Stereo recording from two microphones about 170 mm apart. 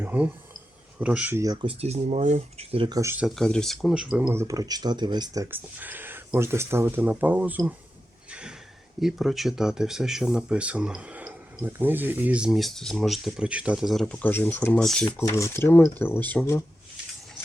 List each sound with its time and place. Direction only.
0.0 s speech: 10° right (ahead or behind)
1.6 s speech: 40° right (ahead or behind)
3.0 s speech: 15° right (ahead or behind)
3.2 s speech: 5° left (ahead or behind)
4.3 s speech: 15° right (ahead or behind)
5.7 s speech: 10° right (ahead or behind)
8.3 s a sound: 5° right (ahead or behind)
9.0 s speech: centre (ahead or behind)
15.2 s speech: 15° left (ahead or behind)